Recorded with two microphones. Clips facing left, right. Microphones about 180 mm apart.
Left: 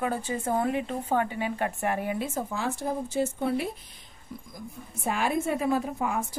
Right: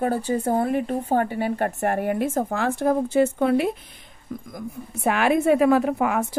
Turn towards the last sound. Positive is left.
turn(degrees=-70)  # may be behind; listen again after turning